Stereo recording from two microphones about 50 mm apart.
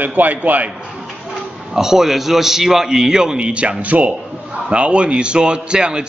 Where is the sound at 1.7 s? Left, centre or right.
Centre.